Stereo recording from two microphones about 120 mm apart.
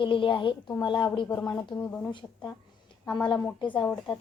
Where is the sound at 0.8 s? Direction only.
35° left (ahead or behind).